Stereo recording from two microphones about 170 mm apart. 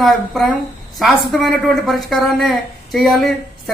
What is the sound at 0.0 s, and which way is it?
Speech, centre (ahead or behind).